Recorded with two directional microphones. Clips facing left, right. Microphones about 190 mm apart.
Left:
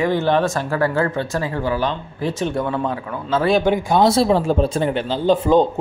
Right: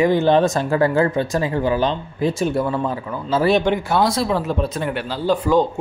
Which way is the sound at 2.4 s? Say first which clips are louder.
Left 2 dB; 5° right (ahead or behind).